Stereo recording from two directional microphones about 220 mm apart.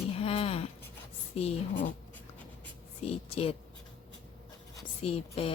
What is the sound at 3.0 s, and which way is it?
Speech, 25° left (ahead or behind).